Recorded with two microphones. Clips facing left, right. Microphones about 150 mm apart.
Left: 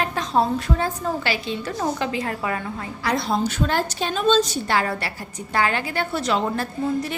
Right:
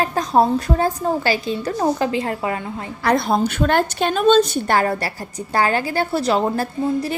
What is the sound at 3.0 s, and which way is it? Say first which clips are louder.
A woman's voice: right 5 dB; 55° right (ahead or behind).